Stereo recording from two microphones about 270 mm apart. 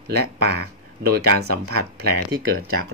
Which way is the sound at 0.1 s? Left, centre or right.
Right.